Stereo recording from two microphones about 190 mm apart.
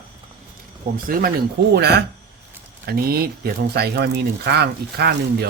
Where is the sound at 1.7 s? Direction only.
60° right (ahead or behind).